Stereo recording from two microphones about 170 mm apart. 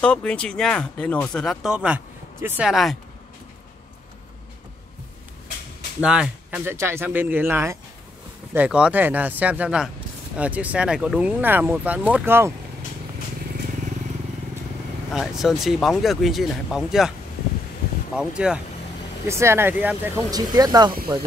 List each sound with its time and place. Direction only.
0.0 s speech: 5° left (ahead or behind)
5.9 s speech: 5° right (ahead or behind)
15.1 s speech: centre (ahead or behind)
18.1 s speech: 5° right (ahead or behind)
19.2 s speech: 15° right (ahead or behind)
20.2 s speech: 20° right (ahead or behind)